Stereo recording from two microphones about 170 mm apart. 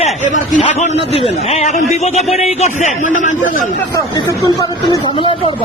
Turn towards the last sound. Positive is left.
turn(degrees=20)  # may be behind; listen again after turning